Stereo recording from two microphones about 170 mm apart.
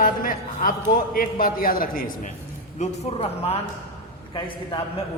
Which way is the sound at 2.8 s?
35° left (ahead or behind).